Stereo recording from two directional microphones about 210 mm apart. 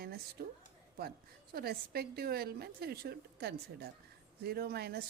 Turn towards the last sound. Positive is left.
turn(degrees=-50)  # may be behind; listen again after turning